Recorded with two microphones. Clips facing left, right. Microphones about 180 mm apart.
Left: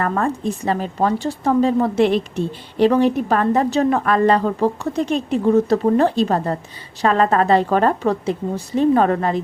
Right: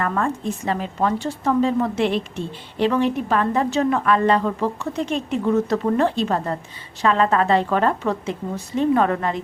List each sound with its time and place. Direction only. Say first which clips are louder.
0.0 s a woman's voice: left 3 dB; 35° left (ahead or behind)